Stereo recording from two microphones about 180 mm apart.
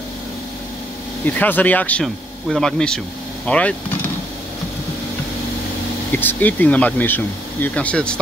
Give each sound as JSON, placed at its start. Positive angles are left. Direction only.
{"t": 1.2, "sound": "speech", "side_deg": 10}
{"t": 6.1, "sound": "speech", "side_deg": 10}